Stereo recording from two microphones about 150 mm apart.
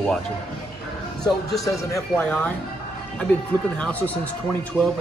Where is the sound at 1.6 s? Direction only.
20° left (ahead or behind).